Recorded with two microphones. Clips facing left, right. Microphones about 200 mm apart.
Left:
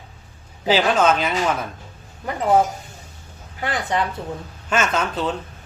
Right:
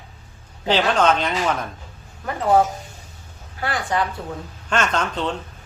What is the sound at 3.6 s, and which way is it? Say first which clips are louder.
Speech: even; 20° left (ahead or behind).